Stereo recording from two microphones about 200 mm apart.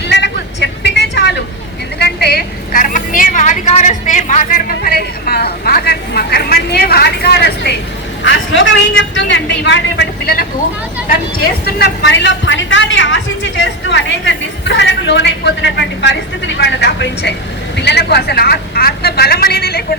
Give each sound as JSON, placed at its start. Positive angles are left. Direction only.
{"t": 0.1, "sound": "vehicle", "side_deg": 60}
{"t": 2.0, "sound": "a sound", "side_deg": 50}
{"t": 8.2, "sound": "a woman's voice", "side_deg": 70}
{"t": 11.6, "sound": "a woman's voice", "side_deg": 60}